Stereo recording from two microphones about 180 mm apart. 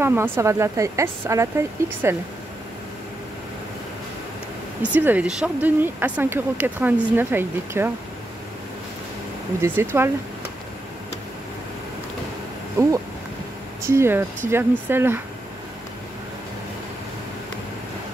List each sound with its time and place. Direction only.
0.0 s speech: 10° right (ahead or behind)
4.8 s speech: 10° right (ahead or behind)
9.6 s speech: 15° right (ahead or behind)
12.8 s speech: 15° right (ahead or behind)